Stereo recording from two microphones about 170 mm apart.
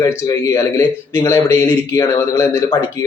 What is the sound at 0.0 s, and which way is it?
A man's voice, 20° left (ahead or behind).